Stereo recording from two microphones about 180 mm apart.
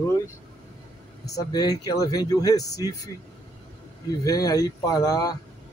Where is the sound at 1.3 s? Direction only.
20° left (ahead or behind).